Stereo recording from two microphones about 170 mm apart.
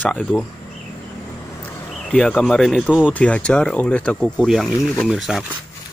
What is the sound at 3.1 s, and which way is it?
Speech, 5° left (ahead or behind).